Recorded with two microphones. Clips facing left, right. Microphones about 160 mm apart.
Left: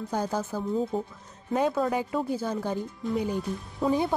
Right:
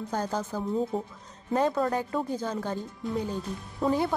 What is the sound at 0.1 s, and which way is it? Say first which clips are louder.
A woman's voice: left 2 dB; 10° left (ahead or behind).